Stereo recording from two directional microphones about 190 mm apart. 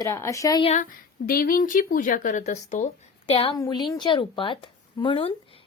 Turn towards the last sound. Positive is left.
turn(degrees=25)  # may be behind; listen again after turning